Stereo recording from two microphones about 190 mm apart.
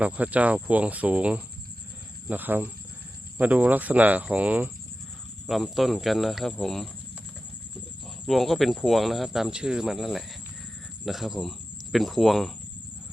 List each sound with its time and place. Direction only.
0.0 s speech: 5° right (ahead or behind)
8.0 s speech: centre (ahead or behind)